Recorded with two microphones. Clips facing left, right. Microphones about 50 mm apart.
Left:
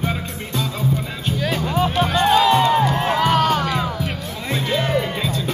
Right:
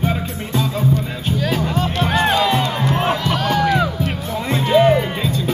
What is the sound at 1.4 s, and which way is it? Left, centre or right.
Music, centre.